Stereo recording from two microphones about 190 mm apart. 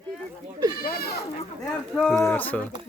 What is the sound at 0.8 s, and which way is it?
Goat, 50° left (ahead or behind).